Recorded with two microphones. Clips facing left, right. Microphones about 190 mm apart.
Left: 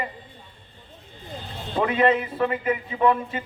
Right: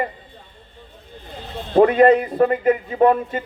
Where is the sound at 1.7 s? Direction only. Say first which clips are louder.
Right 8 dB; 45° right (ahead or behind).